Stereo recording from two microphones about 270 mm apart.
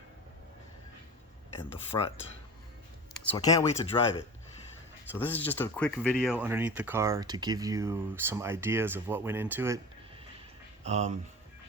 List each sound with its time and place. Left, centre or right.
3.2 s speech: centre
10.8 s speech: right